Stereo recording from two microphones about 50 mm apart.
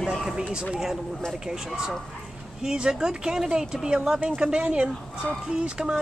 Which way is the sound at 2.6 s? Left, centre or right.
Centre.